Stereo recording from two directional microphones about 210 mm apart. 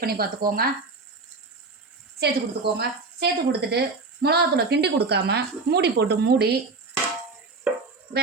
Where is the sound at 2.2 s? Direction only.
50° right (ahead or behind).